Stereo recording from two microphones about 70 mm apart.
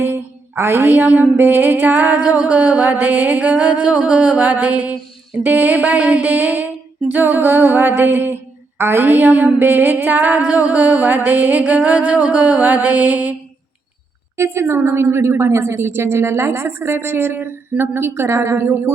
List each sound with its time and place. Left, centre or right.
0.0 s mantra: right
14.3 s a woman's voice: right